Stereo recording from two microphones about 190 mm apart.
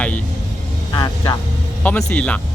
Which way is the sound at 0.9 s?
20° left (ahead or behind).